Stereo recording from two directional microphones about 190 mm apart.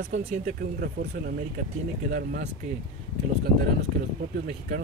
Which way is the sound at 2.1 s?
60° right (ahead or behind).